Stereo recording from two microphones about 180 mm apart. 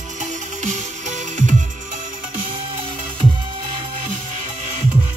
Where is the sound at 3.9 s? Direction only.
45° right (ahead or behind).